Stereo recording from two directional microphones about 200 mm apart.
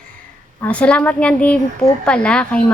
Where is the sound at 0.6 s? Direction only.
5° left (ahead or behind).